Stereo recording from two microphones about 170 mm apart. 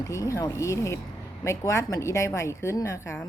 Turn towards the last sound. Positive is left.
turn(degrees=15)  # may be behind; listen again after turning